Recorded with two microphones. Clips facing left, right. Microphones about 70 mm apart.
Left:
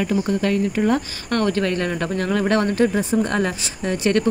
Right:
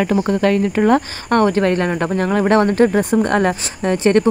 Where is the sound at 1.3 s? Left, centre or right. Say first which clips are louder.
Right 6 dB; right.